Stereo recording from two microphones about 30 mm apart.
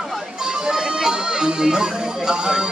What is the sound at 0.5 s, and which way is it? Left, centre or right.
Speech, right.